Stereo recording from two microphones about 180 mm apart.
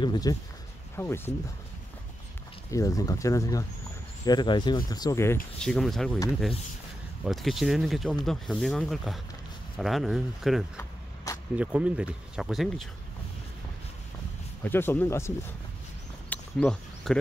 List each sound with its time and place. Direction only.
0.0 s speech: 20° left (ahead or behind)
2.7 s speech: 20° left (ahead or behind)
5.6 s speech: centre (ahead or behind)
7.2 s speech: centre (ahead or behind)
14.6 s speech: 10° left (ahead or behind)
16.3 s a sound: 5° left (ahead or behind)